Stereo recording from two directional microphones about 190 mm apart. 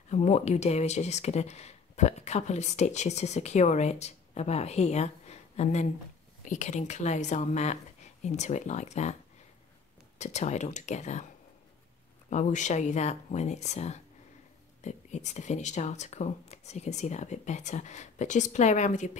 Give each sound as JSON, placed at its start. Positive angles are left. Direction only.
{"t": 0.1, "sound": "speech", "side_deg": 35}
{"t": 10.1, "sound": "speech", "side_deg": 35}
{"t": 12.3, "sound": "speech", "side_deg": 40}